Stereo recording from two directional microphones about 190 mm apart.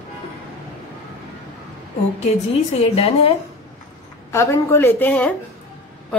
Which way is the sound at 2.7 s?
30° left (ahead or behind).